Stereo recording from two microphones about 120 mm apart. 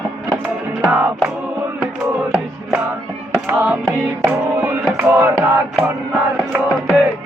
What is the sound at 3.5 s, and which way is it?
Music, 15° right (ahead or behind).